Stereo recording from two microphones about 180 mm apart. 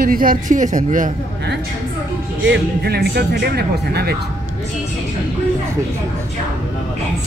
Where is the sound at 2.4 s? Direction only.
70° right (ahead or behind).